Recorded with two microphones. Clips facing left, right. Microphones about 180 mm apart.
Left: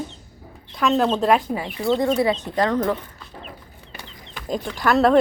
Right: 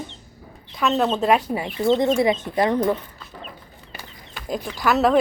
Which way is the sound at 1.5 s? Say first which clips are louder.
Right 2 dB; 20° right (ahead or behind).